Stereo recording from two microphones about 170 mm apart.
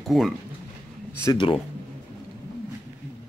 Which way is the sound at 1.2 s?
30° left (ahead or behind).